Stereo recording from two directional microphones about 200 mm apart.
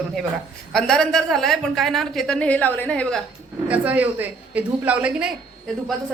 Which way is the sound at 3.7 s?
5° right (ahead or behind).